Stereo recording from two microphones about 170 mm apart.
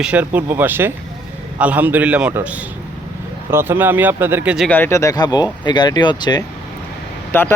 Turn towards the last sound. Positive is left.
turn(degrees=10)  # may be behind; listen again after turning